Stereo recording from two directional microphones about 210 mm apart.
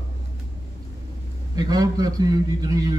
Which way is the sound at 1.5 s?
20° right (ahead or behind).